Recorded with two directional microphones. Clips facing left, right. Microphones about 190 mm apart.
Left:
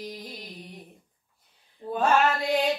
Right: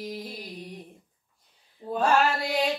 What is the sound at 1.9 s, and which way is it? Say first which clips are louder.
Speech: even; centre (ahead or behind).